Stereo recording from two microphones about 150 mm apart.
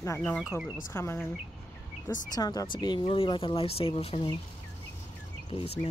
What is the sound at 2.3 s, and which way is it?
Speech, 25° left (ahead or behind).